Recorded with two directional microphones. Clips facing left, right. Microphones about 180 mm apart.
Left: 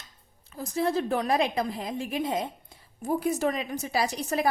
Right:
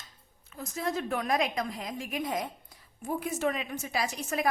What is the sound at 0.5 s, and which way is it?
A woman's voice, 35° left (ahead or behind).